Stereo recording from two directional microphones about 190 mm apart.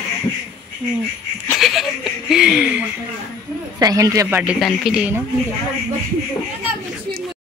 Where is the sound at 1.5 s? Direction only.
Centre (ahead or behind).